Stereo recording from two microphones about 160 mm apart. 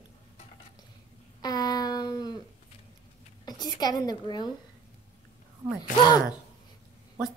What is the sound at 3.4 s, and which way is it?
A woman's voice, 25° left (ahead or behind).